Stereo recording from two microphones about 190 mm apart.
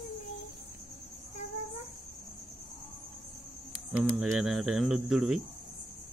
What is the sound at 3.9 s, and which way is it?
Speech, 5° right (ahead or behind).